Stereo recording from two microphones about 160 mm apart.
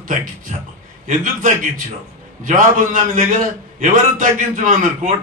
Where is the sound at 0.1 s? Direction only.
55° right (ahead or behind).